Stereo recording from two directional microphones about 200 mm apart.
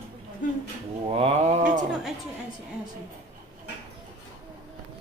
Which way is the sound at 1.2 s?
35° right (ahead or behind).